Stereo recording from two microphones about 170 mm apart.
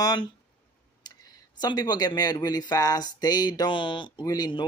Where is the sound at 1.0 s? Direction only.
25° left (ahead or behind).